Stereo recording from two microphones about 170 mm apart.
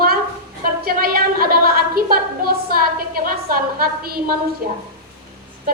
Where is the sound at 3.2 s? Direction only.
60° right (ahead or behind).